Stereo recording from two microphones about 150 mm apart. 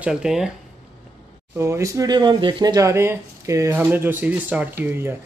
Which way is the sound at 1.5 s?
20° right (ahead or behind).